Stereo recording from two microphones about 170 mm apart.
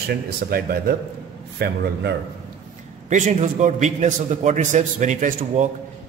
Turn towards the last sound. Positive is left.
turn(degrees=-45)  # may be behind; listen again after turning